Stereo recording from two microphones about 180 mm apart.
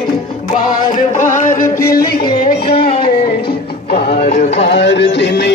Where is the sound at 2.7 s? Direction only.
30° left (ahead or behind).